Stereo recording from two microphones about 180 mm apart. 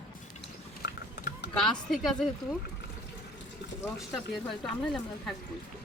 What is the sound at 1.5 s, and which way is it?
Speech, centre (ahead or behind).